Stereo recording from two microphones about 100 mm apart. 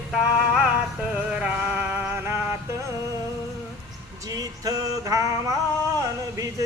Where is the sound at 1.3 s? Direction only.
10° right (ahead or behind); by 2.5 s 25° right (ahead or behind).